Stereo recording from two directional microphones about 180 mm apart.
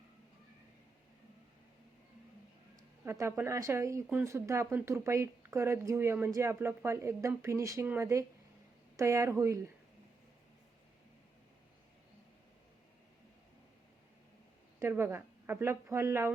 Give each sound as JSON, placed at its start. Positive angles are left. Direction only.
{"t": 3.0, "sound": "speech", "side_deg": -15}
{"t": 14.8, "sound": "speech", "side_deg": -15}